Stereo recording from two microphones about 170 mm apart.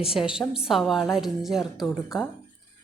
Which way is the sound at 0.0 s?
5° right (ahead or behind).